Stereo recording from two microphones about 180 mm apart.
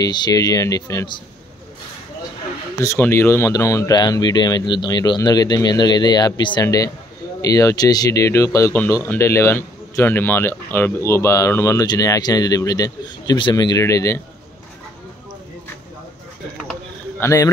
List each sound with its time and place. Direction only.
0.0 s speech: 20° left (ahead or behind)
2.8 s speech: 15° left (ahead or behind)
17.2 s speech: 15° left (ahead or behind)